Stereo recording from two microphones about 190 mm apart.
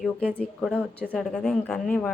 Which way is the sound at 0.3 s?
5° left (ahead or behind).